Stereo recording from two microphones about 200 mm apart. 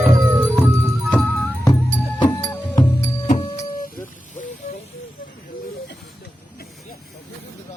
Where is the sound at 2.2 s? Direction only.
20° left (ahead or behind).